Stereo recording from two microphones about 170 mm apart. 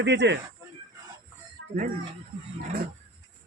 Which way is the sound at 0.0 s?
90° right.